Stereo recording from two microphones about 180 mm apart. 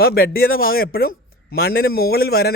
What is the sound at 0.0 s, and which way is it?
A man's voice, 55° left (ahead or behind).